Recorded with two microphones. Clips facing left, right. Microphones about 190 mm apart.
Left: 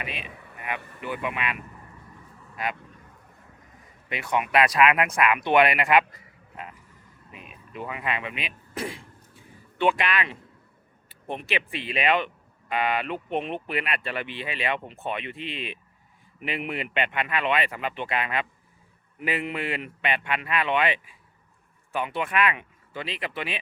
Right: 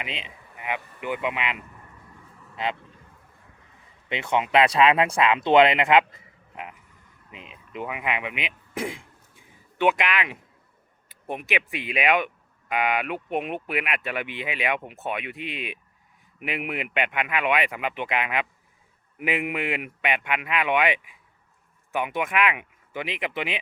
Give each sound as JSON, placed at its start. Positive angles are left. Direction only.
{"t": 0.0, "sound": "speech", "side_deg": -20}
{"t": 4.1, "sound": "speech", "side_deg": -25}
{"t": 9.3, "sound": "a sound", "side_deg": -15}
{"t": 11.3, "sound": "speech", "side_deg": -10}